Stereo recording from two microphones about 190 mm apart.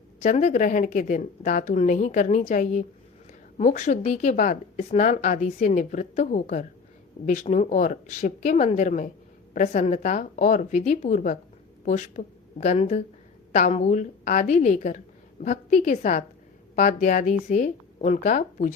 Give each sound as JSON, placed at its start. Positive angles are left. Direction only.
{"t": 0.2, "sound": "a woman's voice", "side_deg": 40}